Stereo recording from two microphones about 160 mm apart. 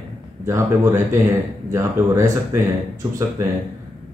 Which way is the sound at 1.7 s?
20° right (ahead or behind).